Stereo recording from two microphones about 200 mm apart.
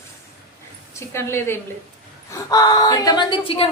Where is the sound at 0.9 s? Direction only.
15° left (ahead or behind).